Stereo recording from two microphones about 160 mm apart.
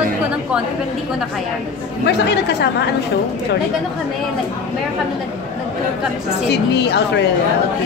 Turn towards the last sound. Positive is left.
turn(degrees=90)